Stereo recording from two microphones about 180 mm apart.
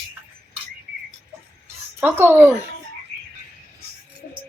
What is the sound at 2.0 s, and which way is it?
Speech, 10° right (ahead or behind).